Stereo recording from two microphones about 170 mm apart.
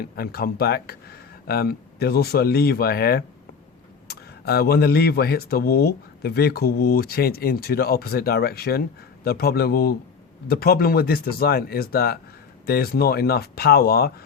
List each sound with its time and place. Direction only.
0.0 s speech: 65° left (ahead or behind)